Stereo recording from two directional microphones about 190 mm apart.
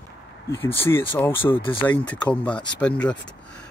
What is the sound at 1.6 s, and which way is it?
Speech, 25° left (ahead or behind).